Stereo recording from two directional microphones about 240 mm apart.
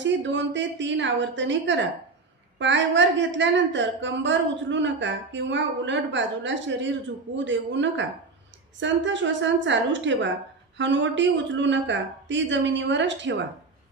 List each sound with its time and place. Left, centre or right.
0.0 s a woman's voice: right